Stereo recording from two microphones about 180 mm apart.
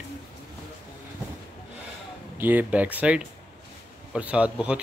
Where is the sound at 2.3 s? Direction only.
10° right (ahead or behind).